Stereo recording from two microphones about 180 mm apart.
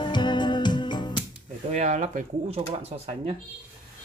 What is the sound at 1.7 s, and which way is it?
Speech, 40° right (ahead or behind).